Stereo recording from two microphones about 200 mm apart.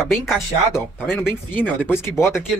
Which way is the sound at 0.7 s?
10° left (ahead or behind).